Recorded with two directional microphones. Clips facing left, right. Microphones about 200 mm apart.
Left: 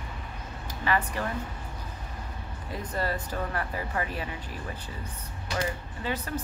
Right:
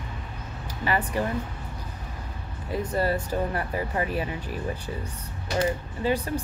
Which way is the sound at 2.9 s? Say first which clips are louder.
Right 5 dB; 20° right (ahead or behind).